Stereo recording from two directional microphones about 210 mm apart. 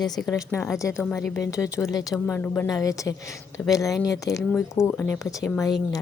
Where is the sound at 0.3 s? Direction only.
15° left (ahead or behind).